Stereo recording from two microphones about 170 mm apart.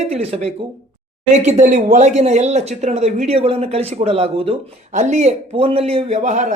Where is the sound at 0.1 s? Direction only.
35° right (ahead or behind).